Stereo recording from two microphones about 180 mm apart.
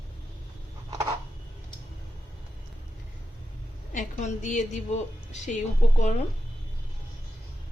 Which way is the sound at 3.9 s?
45° left (ahead or behind).